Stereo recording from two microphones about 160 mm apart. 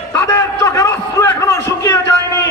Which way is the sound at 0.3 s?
20° left (ahead or behind).